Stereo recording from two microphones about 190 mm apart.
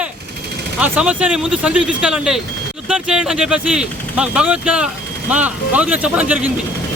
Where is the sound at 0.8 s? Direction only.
10° right (ahead or behind).